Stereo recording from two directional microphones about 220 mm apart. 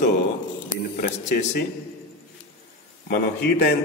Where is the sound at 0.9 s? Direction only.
40° left (ahead or behind).